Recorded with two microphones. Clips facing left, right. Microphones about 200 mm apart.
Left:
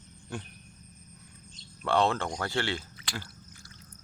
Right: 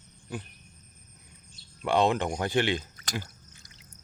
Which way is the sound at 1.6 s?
15° right (ahead or behind).